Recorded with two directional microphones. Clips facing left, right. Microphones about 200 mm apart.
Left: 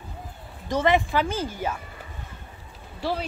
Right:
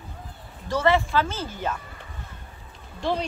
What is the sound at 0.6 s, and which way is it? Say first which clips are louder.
Speech: even; 15° left (ahead or behind).